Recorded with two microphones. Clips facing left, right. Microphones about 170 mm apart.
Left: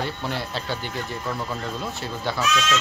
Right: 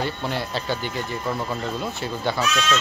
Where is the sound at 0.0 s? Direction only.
Centre (ahead or behind).